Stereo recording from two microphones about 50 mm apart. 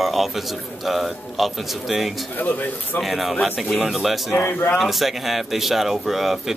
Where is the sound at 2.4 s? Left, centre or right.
Left.